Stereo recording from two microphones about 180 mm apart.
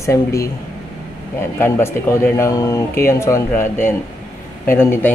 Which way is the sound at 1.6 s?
15° left (ahead or behind).